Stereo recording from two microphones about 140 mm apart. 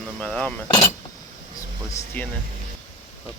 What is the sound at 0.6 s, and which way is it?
Cutlery, 30° left (ahead or behind).